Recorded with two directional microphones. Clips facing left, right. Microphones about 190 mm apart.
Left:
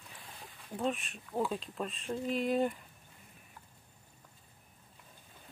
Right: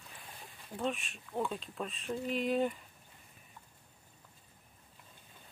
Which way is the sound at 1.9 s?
35° left (ahead or behind).